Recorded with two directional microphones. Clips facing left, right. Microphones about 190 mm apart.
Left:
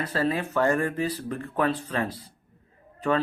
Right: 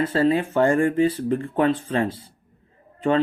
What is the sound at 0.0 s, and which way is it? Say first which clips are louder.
Speech: right 7 dB; 25° right (ahead or behind).